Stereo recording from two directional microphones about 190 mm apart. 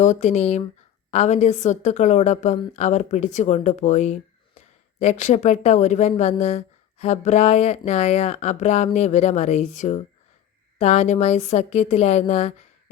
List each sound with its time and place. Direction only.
0.0 s speech: 40° left (ahead or behind)